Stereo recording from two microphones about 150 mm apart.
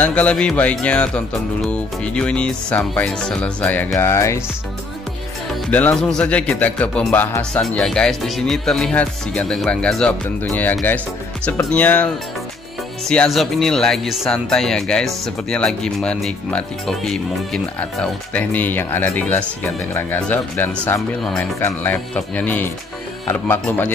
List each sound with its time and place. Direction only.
0.0 s speech: 10° left (ahead or behind)
5.7 s speech: 10° left (ahead or behind)
13.1 s speech: 5° left (ahead or behind)
21.2 s speech: centre (ahead or behind)
21.5 s speech: 15° left (ahead or behind)